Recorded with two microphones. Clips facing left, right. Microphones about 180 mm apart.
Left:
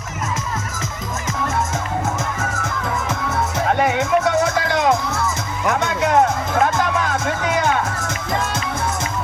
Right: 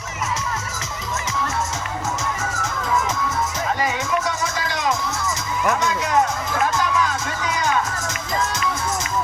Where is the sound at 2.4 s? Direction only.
55° left (ahead or behind).